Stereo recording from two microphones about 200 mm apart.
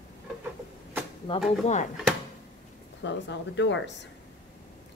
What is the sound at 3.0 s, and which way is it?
Speech, 60° left (ahead or behind).